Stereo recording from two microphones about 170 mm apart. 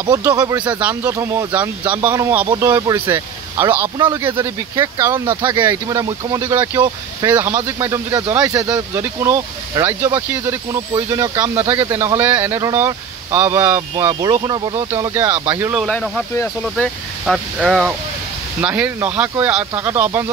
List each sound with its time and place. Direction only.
0.0 s speech: 15° right (ahead or behind)
0.6 s speech: 10° right (ahead or behind)
15.8 s speech: 5° left (ahead or behind); by 20.2 s 15° right (ahead or behind)